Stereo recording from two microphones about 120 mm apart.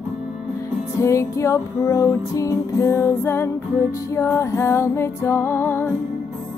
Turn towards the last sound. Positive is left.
turn(degrees=20)  # may be behind; listen again after turning